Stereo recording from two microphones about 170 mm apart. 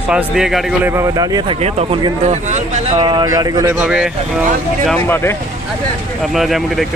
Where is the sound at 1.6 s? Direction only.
40° right (ahead or behind).